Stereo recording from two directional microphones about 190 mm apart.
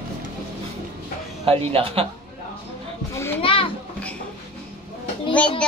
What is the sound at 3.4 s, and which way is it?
Children playing, 30° left (ahead or behind).